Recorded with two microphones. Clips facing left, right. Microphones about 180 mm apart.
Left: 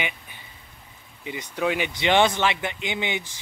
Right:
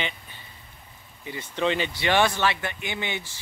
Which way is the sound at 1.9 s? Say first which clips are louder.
Left 2 dB; 20° left (ahead or behind).